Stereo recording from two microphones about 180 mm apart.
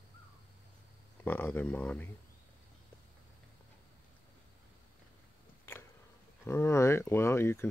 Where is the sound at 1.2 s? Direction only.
10° left (ahead or behind).